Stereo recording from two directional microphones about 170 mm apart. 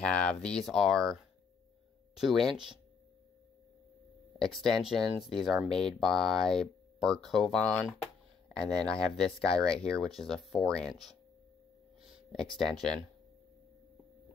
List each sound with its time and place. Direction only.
0.0 s speech: 5° left (ahead or behind)
2.1 s speech: centre (ahead or behind)
4.4 s speech: centre (ahead or behind)
12.1 s a sound: 5° left (ahead or behind)
12.6 s speech: centre (ahead or behind)